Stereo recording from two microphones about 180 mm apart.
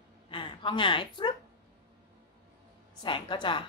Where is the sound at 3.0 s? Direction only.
25° left (ahead or behind).